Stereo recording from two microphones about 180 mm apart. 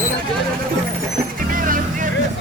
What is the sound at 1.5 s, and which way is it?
Music, 50° right (ahead or behind).